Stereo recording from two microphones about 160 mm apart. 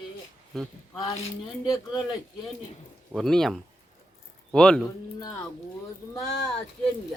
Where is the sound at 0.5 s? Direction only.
Centre (ahead or behind).